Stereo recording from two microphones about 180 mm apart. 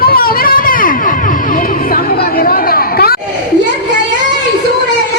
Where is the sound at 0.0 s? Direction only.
55° left (ahead or behind).